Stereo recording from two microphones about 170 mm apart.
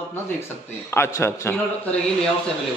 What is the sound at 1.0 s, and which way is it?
Speech, 15° left (ahead or behind).